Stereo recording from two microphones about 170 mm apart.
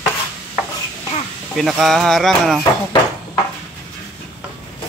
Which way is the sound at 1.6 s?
Centre (ahead or behind).